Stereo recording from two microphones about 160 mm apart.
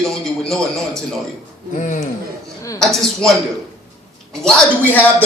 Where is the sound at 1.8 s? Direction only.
55° left (ahead or behind).